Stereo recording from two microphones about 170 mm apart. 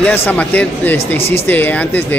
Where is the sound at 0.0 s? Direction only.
10° left (ahead or behind).